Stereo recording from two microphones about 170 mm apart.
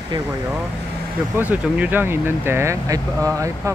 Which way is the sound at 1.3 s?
10° right (ahead or behind).